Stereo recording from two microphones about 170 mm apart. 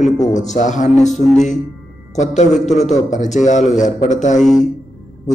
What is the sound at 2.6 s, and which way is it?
A man's voice, 45° left (ahead or behind).